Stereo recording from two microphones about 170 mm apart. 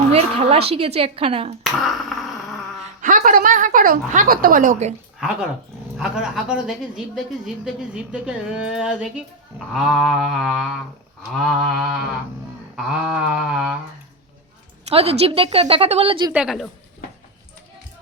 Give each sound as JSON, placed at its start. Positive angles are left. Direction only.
{"t": 0.1, "sound": "a woman's voice", "side_deg": -35}
{"t": 1.8, "sound": "dog", "side_deg": 0}
{"t": 3.0, "sound": "a woman's voice", "side_deg": -50}
{"t": 6.0, "sound": "a woman's voice", "side_deg": 0}
{"t": 14.8, "sound": "a woman's voice", "side_deg": -35}
{"t": 16.3, "sound": "a woman's voice", "side_deg": -5}